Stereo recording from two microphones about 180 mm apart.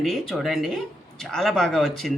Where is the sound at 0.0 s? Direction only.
Centre (ahead or behind).